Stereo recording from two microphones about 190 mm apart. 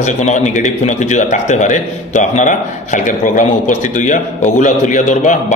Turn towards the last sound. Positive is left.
turn(degrees=40)  # may be behind; listen again after turning